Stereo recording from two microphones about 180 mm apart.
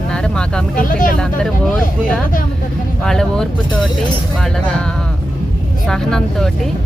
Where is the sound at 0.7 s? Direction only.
50° left (ahead or behind).